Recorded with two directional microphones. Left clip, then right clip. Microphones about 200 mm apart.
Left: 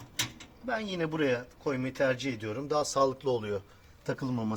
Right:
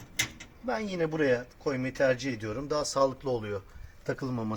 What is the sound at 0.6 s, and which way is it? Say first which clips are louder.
Speech: right 2 dB; 15° right (ahead or behind).